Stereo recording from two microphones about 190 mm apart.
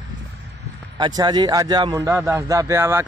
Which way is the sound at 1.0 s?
20° right (ahead or behind).